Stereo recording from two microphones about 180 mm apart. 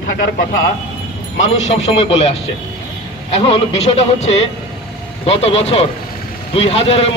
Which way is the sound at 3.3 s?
35° left (ahead or behind).